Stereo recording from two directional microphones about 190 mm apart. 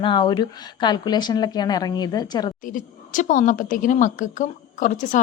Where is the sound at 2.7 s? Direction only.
45° left (ahead or behind).